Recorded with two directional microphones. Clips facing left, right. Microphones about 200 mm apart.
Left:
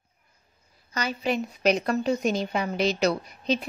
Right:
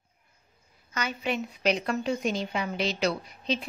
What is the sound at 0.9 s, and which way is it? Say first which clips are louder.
A woman's voice: left 3 dB; 35° left (ahead or behind).